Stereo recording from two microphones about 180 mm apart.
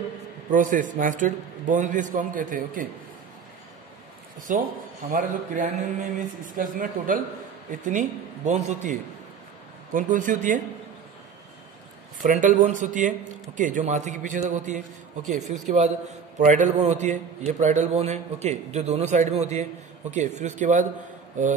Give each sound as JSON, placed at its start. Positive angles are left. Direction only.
{"t": 0.5, "sound": "speech", "side_deg": -45}
{"t": 4.5, "sound": "speech", "side_deg": -45}
{"t": 9.9, "sound": "speech", "side_deg": -45}
{"t": 12.2, "sound": "a man's voice", "side_deg": -45}